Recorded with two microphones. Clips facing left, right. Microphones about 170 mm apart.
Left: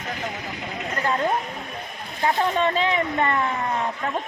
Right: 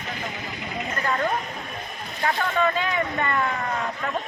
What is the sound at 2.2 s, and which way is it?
Speech, 30° left (ahead or behind).